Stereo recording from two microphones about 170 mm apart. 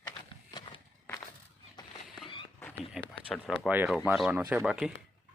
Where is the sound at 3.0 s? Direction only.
5° right (ahead or behind).